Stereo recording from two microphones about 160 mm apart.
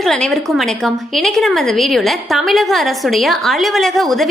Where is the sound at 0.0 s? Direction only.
Centre (ahead or behind).